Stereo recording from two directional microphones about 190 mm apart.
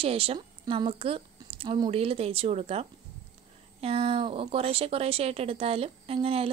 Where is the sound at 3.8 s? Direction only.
30° right (ahead or behind).